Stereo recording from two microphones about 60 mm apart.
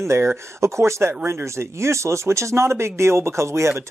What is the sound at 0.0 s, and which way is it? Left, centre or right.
Speech, right.